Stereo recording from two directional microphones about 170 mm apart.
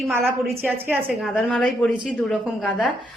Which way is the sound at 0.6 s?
10° right (ahead or behind).